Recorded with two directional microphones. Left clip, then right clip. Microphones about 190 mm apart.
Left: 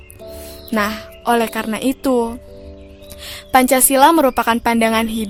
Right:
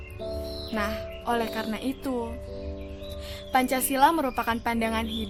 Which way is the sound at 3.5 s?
55° left (ahead or behind).